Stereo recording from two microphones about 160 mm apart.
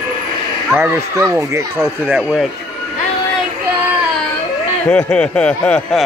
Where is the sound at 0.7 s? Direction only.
10° right (ahead or behind).